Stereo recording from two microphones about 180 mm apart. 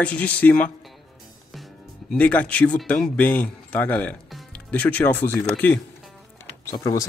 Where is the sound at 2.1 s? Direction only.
10° left (ahead or behind).